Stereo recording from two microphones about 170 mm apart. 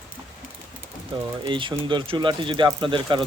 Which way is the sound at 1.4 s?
30° right (ahead or behind).